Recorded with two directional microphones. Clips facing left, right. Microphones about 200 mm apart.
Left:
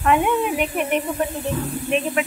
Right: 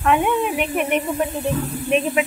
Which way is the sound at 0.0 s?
5° left (ahead or behind).